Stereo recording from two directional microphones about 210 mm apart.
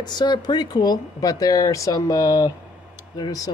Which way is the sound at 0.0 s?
20° left (ahead or behind).